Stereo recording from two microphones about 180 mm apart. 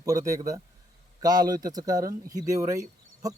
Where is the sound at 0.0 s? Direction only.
20° right (ahead or behind).